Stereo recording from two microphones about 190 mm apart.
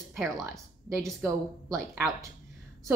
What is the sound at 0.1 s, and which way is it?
Speech, centre (ahead or behind).